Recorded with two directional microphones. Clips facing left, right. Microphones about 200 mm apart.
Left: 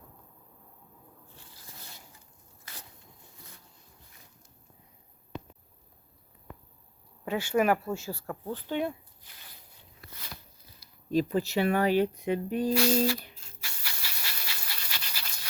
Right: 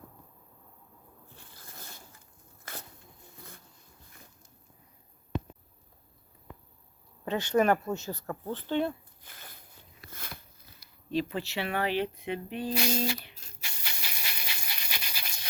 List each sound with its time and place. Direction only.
1.5 s zipper: 55° right (ahead or behind)
2.7 s a sound: 50° right (ahead or behind)
7.3 s speech: 10° left (ahead or behind)
9.2 s a sound: 50° right (ahead or behind)
11.1 s speech: 40° left (ahead or behind)
12.7 s speech: 20° right (ahead or behind)
13.6 s pant: 20° right (ahead or behind)